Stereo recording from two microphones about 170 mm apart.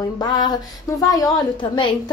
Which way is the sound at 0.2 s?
25° left (ahead or behind).